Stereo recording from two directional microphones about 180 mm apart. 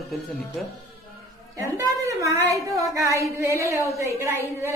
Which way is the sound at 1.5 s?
15° right (ahead or behind).